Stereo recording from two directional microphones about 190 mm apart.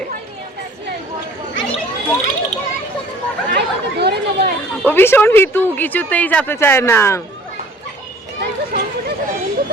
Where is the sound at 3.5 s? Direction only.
60° right (ahead or behind).